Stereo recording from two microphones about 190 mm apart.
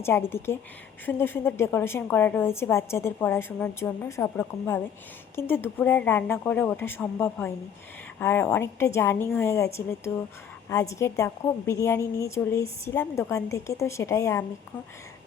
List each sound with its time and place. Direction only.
0.0 s a woman's voice: 10° left (ahead or behind)